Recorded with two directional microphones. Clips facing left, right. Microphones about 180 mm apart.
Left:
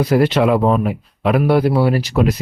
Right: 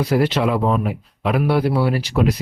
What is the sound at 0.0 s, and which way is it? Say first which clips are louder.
Speech: left 4 dB; 50° left (ahead or behind).